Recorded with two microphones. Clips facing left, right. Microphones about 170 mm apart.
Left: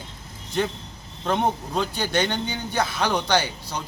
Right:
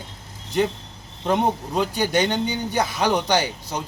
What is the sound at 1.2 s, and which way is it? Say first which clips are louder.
A man's voice: right 2 dB; 15° right (ahead or behind).